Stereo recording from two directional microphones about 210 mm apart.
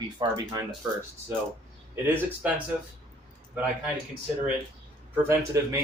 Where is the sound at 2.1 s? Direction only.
5° right (ahead or behind).